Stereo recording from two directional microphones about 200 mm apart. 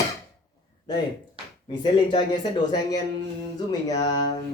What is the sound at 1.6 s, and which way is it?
Speech, 20° left (ahead or behind).